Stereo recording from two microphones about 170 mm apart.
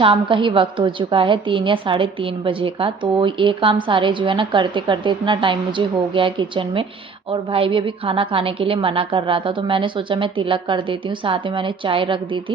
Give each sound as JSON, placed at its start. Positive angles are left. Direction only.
{"t": 0.0, "sound": "a woman's voice", "side_deg": -30}